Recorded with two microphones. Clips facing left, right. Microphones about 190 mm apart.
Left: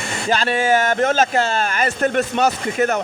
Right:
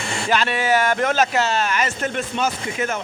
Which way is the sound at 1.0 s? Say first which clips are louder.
Left 3 dB; 30° left (ahead or behind).